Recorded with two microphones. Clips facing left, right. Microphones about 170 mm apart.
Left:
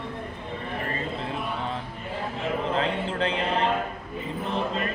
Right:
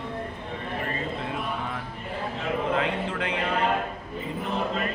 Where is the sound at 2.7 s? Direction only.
30° left (ahead or behind).